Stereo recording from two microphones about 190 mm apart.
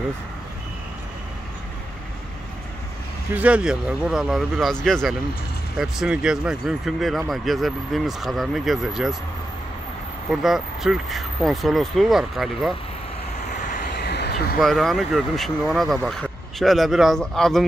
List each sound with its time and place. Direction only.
3.3 s speech: 5° right (ahead or behind)
10.4 s speech: centre (ahead or behind)
13.7 s vehicle: 60° left (ahead or behind)
14.6 s speech: centre (ahead or behind)